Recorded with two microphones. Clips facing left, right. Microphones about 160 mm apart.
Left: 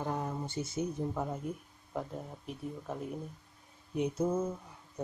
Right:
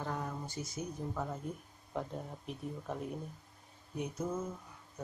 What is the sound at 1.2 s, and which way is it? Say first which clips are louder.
Speech: left 3 dB; 10° left (ahead or behind).